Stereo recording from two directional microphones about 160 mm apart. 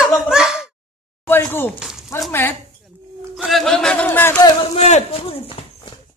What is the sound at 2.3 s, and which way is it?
Speech, 15° left (ahead or behind).